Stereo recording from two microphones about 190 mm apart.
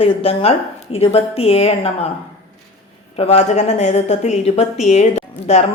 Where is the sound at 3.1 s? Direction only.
30° left (ahead or behind).